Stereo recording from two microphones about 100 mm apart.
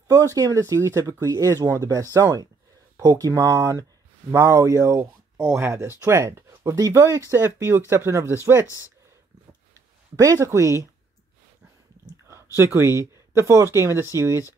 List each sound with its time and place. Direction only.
0.3 s speech: 35° right (ahead or behind)
9.8 s speech: 35° right (ahead or behind)
12.5 s speech: 25° right (ahead or behind)